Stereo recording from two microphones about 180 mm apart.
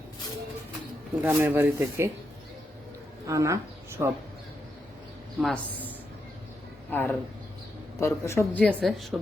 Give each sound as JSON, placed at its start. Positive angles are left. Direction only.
{"t": 1.2, "sound": "speech", "side_deg": -10}
{"t": 3.2, "sound": "speech", "side_deg": -15}
{"t": 6.9, "sound": "speech", "side_deg": 10}